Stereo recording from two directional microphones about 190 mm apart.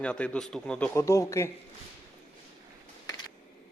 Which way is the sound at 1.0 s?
15° left (ahead or behind).